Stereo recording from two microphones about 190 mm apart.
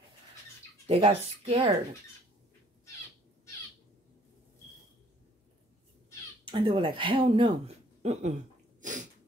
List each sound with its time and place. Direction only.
0.8 s speech: 30° right (ahead or behind)
6.4 s speech: 25° right (ahead or behind)